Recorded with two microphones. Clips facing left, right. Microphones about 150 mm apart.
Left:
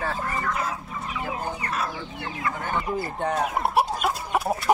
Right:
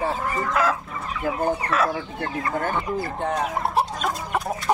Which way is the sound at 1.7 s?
75° right (ahead or behind).